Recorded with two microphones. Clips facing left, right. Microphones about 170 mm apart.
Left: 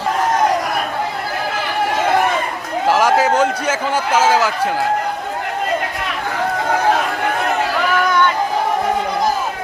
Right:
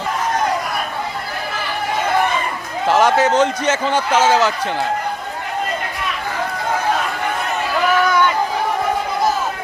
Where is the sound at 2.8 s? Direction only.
5° left (ahead or behind).